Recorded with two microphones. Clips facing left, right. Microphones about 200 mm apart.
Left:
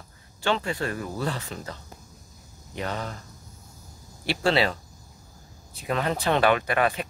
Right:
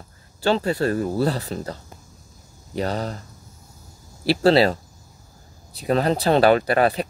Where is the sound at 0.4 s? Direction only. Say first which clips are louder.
Right 6 dB; 35° right (ahead or behind).